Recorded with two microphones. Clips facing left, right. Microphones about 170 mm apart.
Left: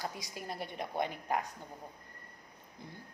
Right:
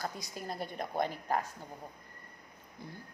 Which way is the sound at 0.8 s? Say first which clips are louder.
Right 2 dB; 40° right (ahead or behind).